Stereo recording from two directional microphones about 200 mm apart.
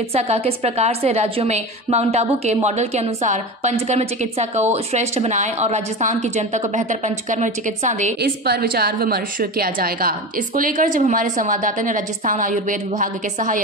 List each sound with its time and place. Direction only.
0.1 s a woman's voice: 30° right (ahead or behind)
8.2 s a woman's voice: 50° right (ahead or behind)